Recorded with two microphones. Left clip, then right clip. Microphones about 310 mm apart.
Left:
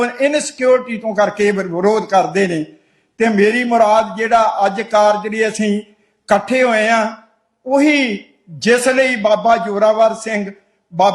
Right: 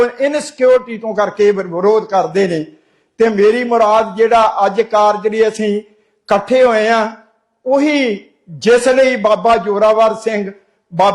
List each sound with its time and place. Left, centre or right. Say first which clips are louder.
0.0 s a man's voice: right 1 dB; centre